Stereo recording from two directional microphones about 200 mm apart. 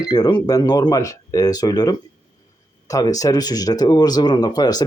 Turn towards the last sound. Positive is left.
turn(degrees=20)  # may be behind; listen again after turning